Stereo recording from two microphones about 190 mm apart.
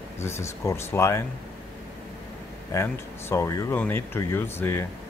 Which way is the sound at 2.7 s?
15° left (ahead or behind).